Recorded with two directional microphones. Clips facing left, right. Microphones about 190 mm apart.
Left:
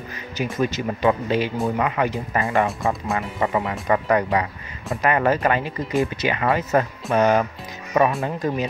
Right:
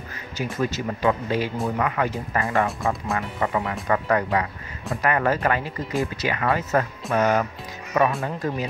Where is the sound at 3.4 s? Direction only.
20° left (ahead or behind).